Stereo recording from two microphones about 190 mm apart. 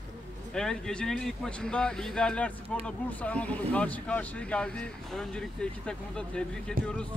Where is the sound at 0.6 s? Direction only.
5° left (ahead or behind).